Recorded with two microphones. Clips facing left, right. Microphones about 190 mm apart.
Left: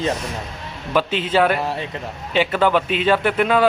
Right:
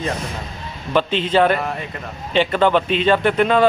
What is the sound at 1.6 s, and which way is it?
Speech, 30° left (ahead or behind).